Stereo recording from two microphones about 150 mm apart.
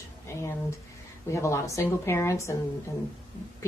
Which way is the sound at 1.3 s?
20° left (ahead or behind).